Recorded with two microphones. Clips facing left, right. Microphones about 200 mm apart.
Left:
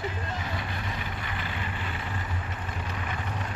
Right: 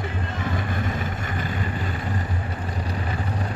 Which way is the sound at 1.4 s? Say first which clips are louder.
Right 9 dB; 40° right (ahead or behind).